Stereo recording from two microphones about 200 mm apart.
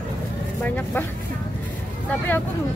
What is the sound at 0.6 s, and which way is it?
Speech, 10° left (ahead or behind).